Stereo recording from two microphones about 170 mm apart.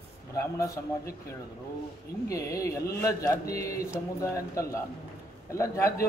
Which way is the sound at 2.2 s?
20° left (ahead or behind).